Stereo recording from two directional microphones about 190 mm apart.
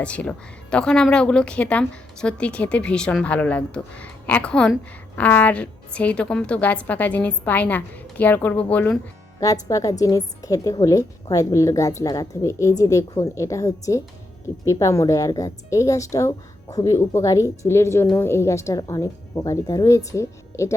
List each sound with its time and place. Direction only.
0.0 s a woman's voice: 5° left (ahead or behind)